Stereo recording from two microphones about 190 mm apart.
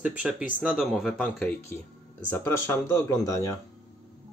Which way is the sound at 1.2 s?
10° left (ahead or behind).